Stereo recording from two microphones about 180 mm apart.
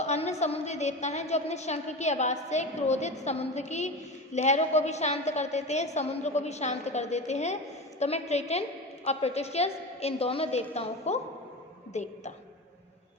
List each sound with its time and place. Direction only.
0.0 s a woman's voice: 35° left (ahead or behind)